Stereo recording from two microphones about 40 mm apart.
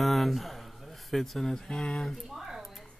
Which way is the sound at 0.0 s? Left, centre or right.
Centre.